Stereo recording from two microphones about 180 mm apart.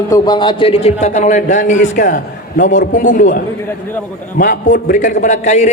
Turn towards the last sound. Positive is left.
turn(degrees=40)  # may be behind; listen again after turning